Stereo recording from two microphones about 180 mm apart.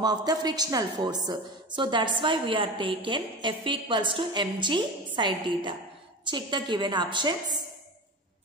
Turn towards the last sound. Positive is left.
turn(degrees=-25)  # may be behind; listen again after turning